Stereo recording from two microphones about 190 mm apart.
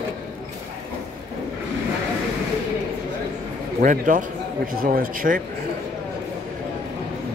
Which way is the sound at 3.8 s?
45° right (ahead or behind).